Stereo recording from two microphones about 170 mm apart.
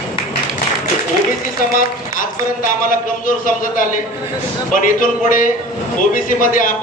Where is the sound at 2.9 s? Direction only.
55° left (ahead or behind).